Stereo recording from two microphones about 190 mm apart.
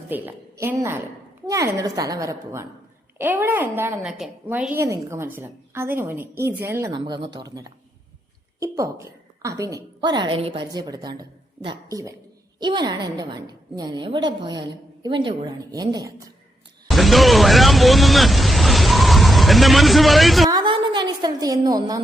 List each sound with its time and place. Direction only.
0.1 s a woman's voice: 10° right (ahead or behind)
6.9 s a woman's voice: 25° right (ahead or behind)
16.9 s music: centre (ahead or behind)
20.5 s a sound: 25° right (ahead or behind)